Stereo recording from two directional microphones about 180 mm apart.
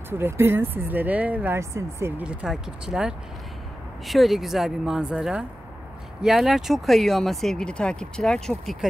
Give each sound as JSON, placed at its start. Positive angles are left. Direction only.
{"t": 0.1, "sound": "speech", "side_deg": -15}